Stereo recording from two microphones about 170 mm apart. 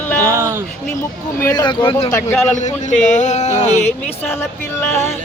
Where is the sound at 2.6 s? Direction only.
45° left (ahead or behind).